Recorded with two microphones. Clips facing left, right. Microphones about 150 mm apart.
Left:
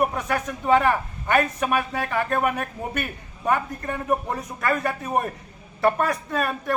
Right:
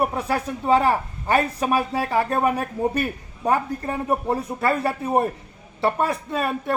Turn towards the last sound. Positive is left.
turn(degrees=-25)  # may be behind; listen again after turning